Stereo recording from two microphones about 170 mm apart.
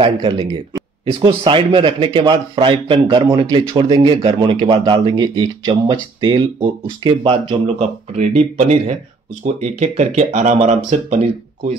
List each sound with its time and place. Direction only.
0.0 s a man's voice: 25° right (ahead or behind)
8.2 s speech: 40° right (ahead or behind)